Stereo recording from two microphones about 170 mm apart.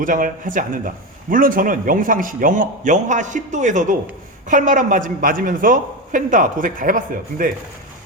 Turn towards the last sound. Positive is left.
turn(degrees=-55)  # may be behind; listen again after turning